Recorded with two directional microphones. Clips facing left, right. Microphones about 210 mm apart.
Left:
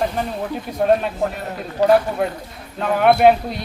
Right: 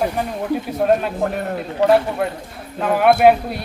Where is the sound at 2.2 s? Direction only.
Centre (ahead or behind).